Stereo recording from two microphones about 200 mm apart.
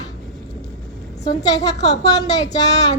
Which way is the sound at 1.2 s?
20° left (ahead or behind).